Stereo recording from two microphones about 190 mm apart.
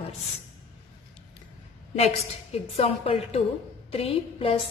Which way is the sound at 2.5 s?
30° left (ahead or behind).